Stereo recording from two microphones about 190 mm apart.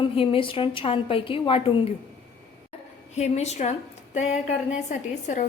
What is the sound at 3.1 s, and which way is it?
Speech, 35° left (ahead or behind).